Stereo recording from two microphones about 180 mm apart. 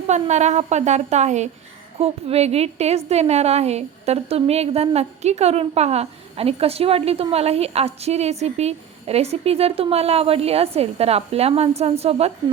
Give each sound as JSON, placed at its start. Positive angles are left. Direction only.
{"t": 0.1, "sound": "a woman's voice", "side_deg": -40}